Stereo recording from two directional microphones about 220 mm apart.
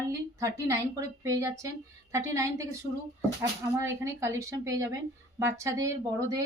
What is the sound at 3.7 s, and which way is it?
A woman's voice, 10° right (ahead or behind).